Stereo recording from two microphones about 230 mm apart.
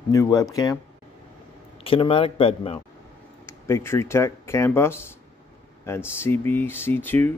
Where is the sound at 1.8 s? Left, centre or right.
Left.